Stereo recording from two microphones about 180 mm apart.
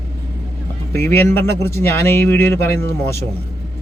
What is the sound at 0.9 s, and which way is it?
Speech, 15° left (ahead or behind).